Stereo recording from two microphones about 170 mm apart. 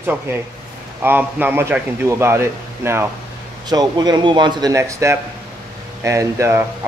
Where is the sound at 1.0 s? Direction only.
10° right (ahead or behind).